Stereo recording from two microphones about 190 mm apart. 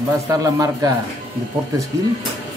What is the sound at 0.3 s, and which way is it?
Speech, 20° right (ahead or behind).